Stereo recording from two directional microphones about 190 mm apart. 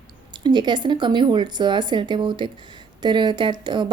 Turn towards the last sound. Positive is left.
turn(degrees=-25)  # may be behind; listen again after turning